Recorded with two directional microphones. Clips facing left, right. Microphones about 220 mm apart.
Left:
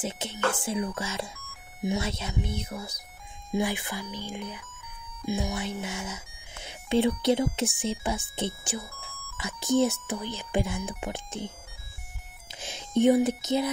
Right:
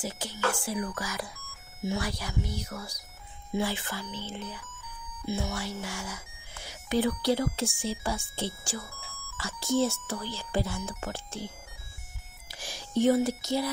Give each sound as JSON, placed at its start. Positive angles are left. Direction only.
{"t": 0.0, "sound": "speech", "side_deg": 20}
{"t": 12.5, "sound": "speech", "side_deg": 20}